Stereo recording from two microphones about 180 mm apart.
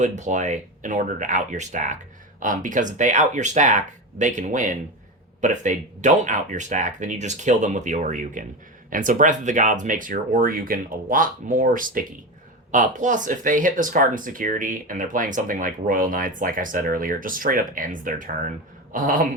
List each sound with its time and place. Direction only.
0.0 s speech: 45° right (ahead or behind)